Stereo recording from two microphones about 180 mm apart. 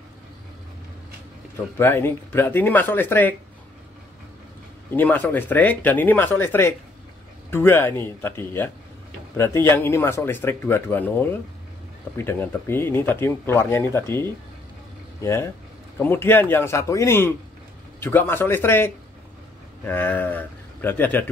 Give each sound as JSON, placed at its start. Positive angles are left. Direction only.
{"t": 1.8, "sound": "speech", "side_deg": 10}
{"t": 4.9, "sound": "speech", "side_deg": 10}